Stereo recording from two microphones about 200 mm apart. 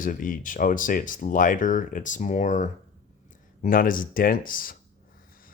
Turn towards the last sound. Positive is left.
turn(degrees=45)  # may be behind; listen again after turning